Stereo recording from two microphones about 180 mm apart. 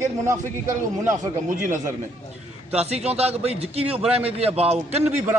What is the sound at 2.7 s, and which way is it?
A woman's voice, 35° right (ahead or behind).